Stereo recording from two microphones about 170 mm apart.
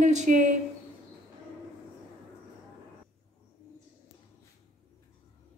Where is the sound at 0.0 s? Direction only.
45° right (ahead or behind).